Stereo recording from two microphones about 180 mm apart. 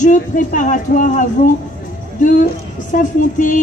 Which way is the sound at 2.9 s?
45° left (ahead or behind).